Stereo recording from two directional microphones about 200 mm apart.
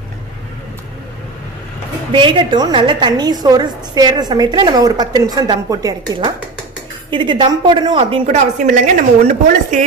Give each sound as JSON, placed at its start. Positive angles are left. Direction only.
{"t": 2.1, "sound": "a woman's voice", "side_deg": -25}
{"t": 8.6, "sound": "speech", "side_deg": -40}